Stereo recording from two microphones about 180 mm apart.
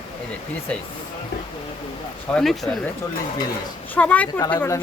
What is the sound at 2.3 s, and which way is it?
Speech, centre (ahead or behind).